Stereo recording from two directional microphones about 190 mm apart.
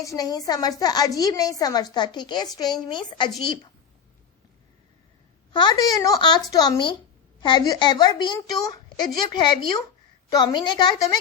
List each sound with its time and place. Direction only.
0.0 s a woman's voice: 20° left (ahead or behind)
5.5 s a woman's voice: 20° left (ahead or behind)